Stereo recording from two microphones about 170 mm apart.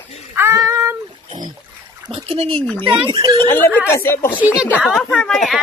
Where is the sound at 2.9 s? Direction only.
30° right (ahead or behind).